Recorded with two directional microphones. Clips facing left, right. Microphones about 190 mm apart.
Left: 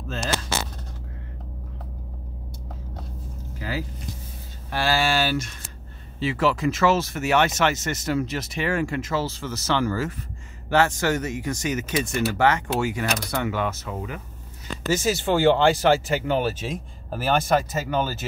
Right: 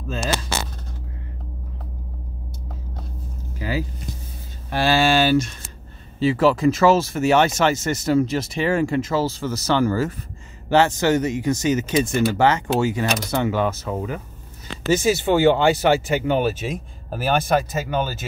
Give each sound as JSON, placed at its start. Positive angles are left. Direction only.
{"t": 3.5, "sound": "vehicle", "side_deg": -20}
{"t": 4.6, "sound": "a sound", "side_deg": -20}
{"t": 6.1, "sound": "speech", "side_deg": -35}
{"t": 10.7, "sound": "speech", "side_deg": -25}
{"t": 14.9, "sound": "speech", "side_deg": -15}